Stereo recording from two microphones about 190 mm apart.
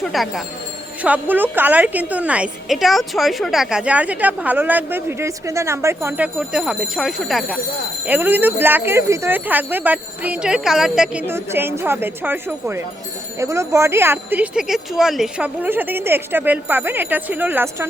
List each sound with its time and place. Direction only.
0.0 s a woman's voice: centre (ahead or behind)